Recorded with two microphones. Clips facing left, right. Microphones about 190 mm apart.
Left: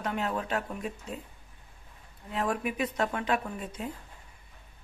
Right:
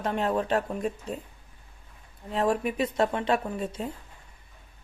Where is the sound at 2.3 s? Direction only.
30° right (ahead or behind).